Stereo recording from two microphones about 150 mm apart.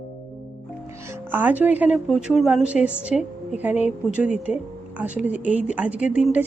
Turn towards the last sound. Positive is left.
turn(degrees=-10)  # may be behind; listen again after turning